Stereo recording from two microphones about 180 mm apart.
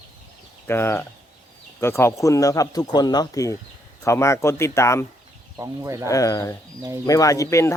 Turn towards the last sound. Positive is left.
turn(degrees=15)  # may be behind; listen again after turning